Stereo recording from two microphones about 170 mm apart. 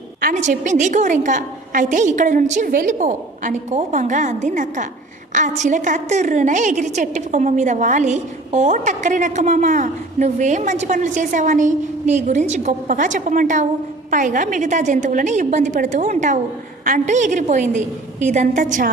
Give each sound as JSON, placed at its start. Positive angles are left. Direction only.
{"t": 0.2, "sound": "a woman's voice", "side_deg": -50}